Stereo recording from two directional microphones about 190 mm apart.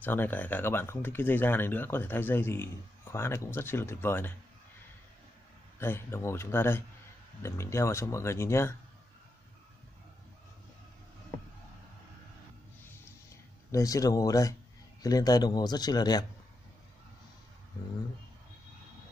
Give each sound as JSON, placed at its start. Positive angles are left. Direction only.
{"t": 0.0, "sound": "speech", "side_deg": 10}
{"t": 5.8, "sound": "speech", "side_deg": 10}
{"t": 13.7, "sound": "a man's voice", "side_deg": 15}